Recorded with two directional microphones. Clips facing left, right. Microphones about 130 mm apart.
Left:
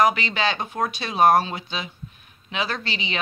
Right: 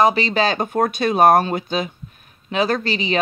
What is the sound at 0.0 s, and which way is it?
Speech, 35° right (ahead or behind).